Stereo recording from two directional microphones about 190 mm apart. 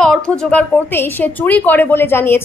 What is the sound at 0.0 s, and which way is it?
Speech, 5° left (ahead or behind).